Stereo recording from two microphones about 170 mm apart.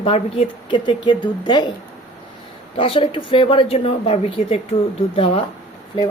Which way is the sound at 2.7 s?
30° left (ahead or behind).